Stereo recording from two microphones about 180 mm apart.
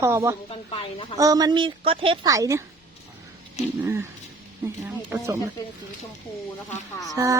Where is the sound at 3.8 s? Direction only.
10° right (ahead or behind).